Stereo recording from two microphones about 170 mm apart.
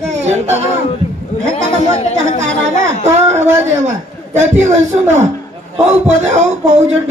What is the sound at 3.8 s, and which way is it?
A man's voice, 45° right (ahead or behind).